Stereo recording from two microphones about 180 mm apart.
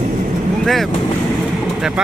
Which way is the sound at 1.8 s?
5° right (ahead or behind).